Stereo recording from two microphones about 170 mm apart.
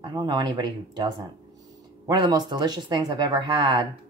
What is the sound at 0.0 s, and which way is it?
Speech, 25° right (ahead or behind).